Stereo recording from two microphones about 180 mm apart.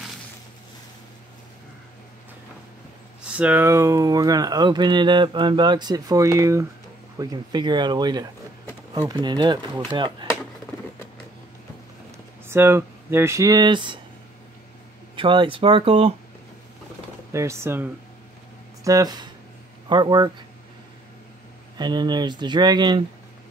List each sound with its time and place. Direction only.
3.3 s speech: 10° right (ahead or behind); by 10.2 s 25° right (ahead or behind)
12.4 s speech: 15° right (ahead or behind)
15.1 s speech: 30° right (ahead or behind)
17.3 s speech: 15° right (ahead or behind)
18.9 s speech: 20° right (ahead or behind)
21.7 s speech: 25° right (ahead or behind)